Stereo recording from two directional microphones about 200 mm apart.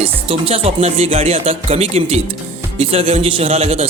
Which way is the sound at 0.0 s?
30° right (ahead or behind).